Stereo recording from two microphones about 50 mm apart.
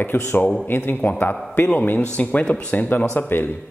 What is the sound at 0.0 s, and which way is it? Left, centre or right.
Speech, left.